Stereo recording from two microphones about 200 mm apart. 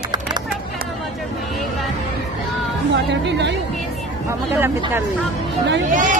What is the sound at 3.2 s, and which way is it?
Speech, 60° right (ahead or behind).